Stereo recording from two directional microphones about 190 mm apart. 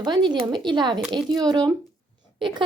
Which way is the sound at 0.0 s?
25° right (ahead or behind).